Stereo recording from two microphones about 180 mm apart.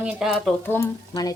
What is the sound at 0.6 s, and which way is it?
Speech, 10° left (ahead or behind).